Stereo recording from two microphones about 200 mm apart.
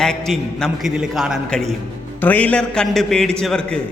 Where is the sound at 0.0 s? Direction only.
5° left (ahead or behind).